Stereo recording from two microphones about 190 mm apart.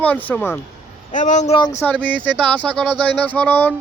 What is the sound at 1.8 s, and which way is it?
Speech, 5° left (ahead or behind).